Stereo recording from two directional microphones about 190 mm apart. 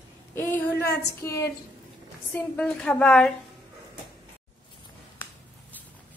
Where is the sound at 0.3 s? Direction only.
10° left (ahead or behind).